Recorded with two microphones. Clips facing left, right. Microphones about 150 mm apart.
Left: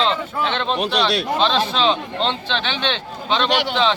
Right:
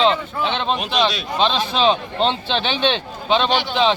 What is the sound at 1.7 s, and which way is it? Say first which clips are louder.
Speech: right 2 dB; 10° right (ahead or behind).